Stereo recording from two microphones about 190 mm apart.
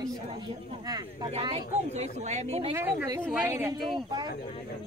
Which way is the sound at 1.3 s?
30° right (ahead or behind).